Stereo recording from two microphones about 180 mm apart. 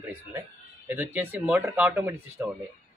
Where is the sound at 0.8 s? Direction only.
10° right (ahead or behind).